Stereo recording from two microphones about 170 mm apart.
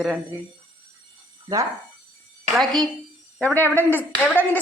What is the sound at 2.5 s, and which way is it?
A woman's voice, centre (ahead or behind).